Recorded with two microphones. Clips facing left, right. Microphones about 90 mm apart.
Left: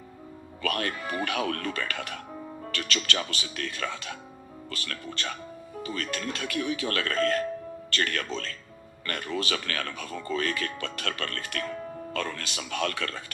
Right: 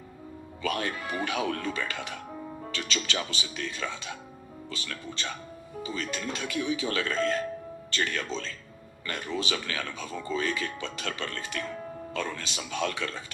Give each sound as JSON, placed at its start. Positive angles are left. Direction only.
{"t": 0.6, "sound": "speech", "side_deg": -15}
{"t": 5.8, "sound": "speech", "side_deg": -20}